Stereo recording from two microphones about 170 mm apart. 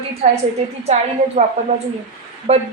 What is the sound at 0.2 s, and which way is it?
Speech, 40° right (ahead or behind).